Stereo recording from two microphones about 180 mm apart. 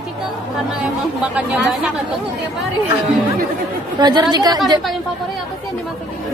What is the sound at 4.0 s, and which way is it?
Speech, 25° right (ahead or behind).